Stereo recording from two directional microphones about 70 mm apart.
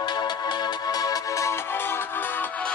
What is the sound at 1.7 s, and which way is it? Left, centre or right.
Music, left.